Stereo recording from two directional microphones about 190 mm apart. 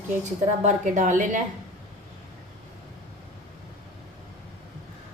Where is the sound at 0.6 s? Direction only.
40° right (ahead or behind).